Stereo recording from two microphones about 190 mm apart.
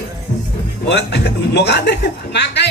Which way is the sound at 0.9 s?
60° left (ahead or behind).